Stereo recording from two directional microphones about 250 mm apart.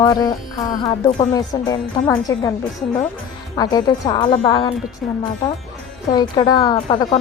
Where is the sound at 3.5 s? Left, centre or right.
Centre.